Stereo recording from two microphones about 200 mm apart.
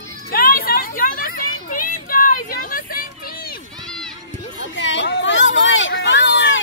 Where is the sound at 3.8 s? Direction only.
Centre (ahead or behind).